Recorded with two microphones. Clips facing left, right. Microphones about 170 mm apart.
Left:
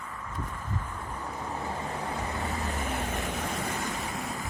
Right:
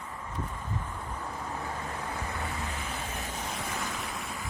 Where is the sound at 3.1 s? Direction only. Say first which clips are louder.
Left 5 dB; 70° left (ahead or behind).